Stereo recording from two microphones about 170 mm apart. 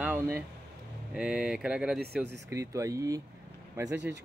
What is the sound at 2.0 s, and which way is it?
Speech, 75° right (ahead or behind).